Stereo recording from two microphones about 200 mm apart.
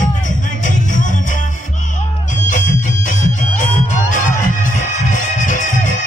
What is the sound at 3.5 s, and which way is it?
Music, 40° left (ahead or behind).